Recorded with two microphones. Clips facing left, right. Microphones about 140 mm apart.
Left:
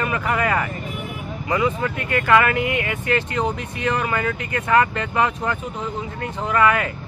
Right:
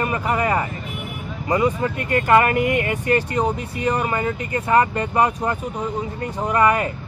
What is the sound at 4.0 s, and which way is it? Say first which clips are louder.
Speech: right 1 dB; 25° right (ahead or behind).